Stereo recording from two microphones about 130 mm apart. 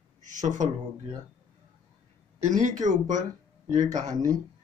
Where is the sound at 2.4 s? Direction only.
70° right (ahead or behind).